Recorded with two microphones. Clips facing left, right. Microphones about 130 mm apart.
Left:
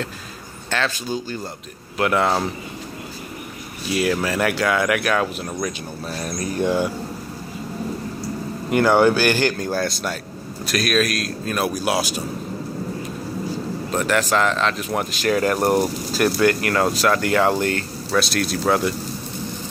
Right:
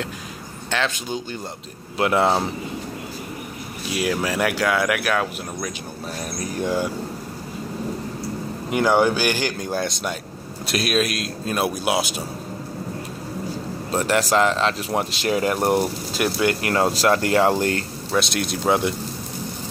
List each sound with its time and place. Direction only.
0.7 s speech: 15° right (ahead or behind)
3.9 s speech: 10° right (ahead or behind)
8.6 s speech: 10° right (ahead or behind)
13.9 s speech: 30° right (ahead or behind)